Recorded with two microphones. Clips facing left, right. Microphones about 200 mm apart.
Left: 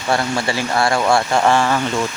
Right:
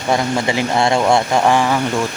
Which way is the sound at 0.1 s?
20° right (ahead or behind).